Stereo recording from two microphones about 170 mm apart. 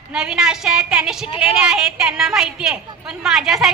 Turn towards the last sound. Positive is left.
turn(degrees=0)  # may be behind; listen again after turning